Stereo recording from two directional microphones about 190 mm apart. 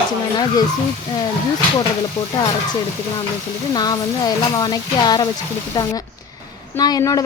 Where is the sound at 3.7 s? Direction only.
20° left (ahead or behind).